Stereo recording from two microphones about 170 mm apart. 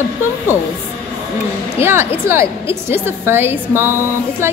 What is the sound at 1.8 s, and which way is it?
A woman's voice, 15° right (ahead or behind).